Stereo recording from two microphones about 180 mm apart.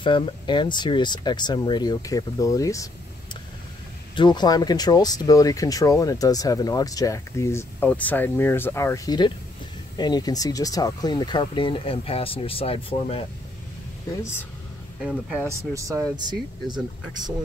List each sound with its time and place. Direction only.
0.0 s speech: 25° left (ahead or behind)
4.1 s speech: 25° left (ahead or behind)
15.0 s speech: 5° right (ahead or behind)
15.4 s speech: 15° right (ahead or behind)